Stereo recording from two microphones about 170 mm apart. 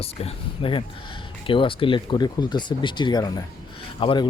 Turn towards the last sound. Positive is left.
turn(degrees=30)  # may be behind; listen again after turning